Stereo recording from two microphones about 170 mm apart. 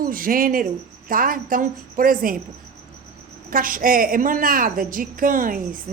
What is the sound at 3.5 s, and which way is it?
A woman's voice, 55° right (ahead or behind).